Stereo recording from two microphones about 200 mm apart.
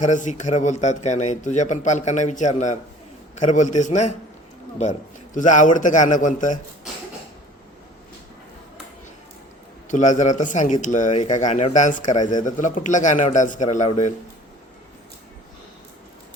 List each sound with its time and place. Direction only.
0.0 s a man's voice: 35° left (ahead or behind)
9.9 s a man's voice: 40° left (ahead or behind)